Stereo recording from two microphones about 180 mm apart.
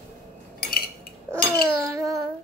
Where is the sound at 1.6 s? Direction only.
15° right (ahead or behind).